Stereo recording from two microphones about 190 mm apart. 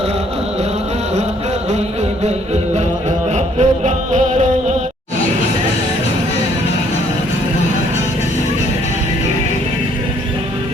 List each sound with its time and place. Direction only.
3.3 s music: 40° right (ahead or behind)